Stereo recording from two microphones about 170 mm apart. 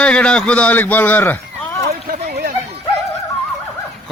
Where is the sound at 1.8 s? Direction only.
65° right (ahead or behind).